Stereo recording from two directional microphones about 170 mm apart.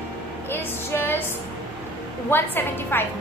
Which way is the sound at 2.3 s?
10° left (ahead or behind).